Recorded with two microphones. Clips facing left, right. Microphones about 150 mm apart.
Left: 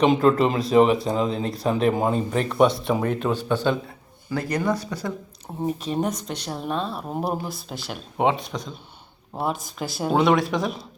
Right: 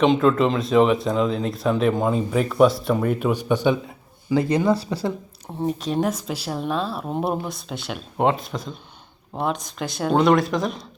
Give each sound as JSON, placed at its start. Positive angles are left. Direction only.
{"t": 0.0, "sound": "speech", "side_deg": 5}
{"t": 5.6, "sound": "speech", "side_deg": 0}